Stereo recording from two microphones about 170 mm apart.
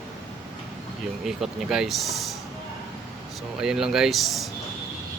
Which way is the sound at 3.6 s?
5° right (ahead or behind).